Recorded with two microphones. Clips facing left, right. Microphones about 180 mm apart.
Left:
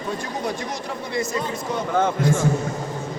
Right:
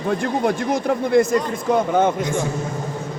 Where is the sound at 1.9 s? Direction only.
20° right (ahead or behind).